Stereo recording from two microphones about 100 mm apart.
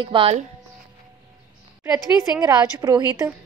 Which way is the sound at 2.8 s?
35° right (ahead or behind).